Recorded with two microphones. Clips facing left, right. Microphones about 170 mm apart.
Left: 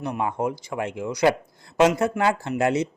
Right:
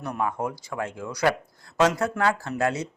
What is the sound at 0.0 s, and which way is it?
Speech, 20° left (ahead or behind).